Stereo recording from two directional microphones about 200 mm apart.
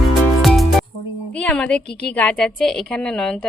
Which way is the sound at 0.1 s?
Centre (ahead or behind).